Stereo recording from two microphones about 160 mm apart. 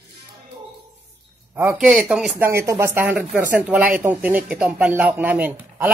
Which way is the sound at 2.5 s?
15° right (ahead or behind).